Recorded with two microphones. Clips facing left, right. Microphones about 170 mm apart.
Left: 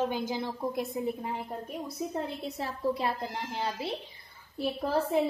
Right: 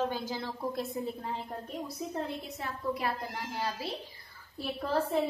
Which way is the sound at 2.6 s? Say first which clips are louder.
Left 4 dB; 25° left (ahead or behind).